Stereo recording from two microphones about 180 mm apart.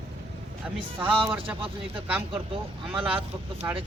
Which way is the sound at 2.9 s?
30° right (ahead or behind).